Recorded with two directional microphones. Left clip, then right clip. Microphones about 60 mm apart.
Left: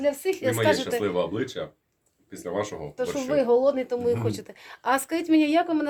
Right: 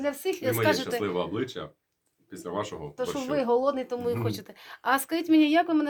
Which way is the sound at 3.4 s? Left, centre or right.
Left.